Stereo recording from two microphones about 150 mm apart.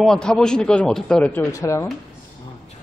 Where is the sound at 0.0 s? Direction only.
5° left (ahead or behind).